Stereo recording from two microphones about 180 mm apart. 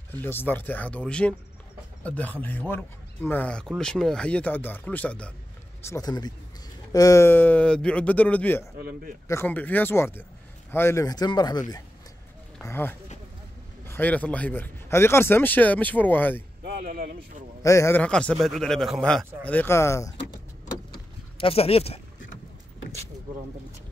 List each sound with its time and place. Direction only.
0.1 s speech: 10° left (ahead or behind)
5.9 s speech: 20° left (ahead or behind)
12.6 s speech: 10° left (ahead or behind)
16.6 s speech: 55° right (ahead or behind)
17.6 s speech: 15° left (ahead or behind)
20.9 s a sound: 30° left (ahead or behind)